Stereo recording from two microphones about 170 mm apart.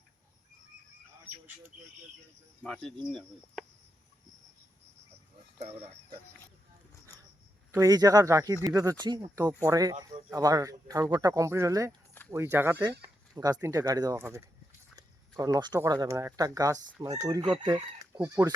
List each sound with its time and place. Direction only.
2.6 s speech: 5° left (ahead or behind)
7.7 s chicken: 20° right (ahead or behind)
12.3 s speech: 15° right (ahead or behind)
16.9 s chicken: 15° right (ahead or behind)